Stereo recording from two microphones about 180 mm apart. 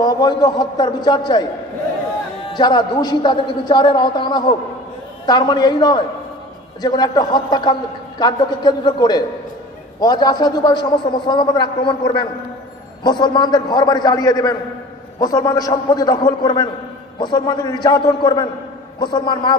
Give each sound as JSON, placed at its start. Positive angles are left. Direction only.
{"t": 0.0, "sound": "a man's voice", "side_deg": 20}
{"t": 2.5, "sound": "a man's voice", "side_deg": 25}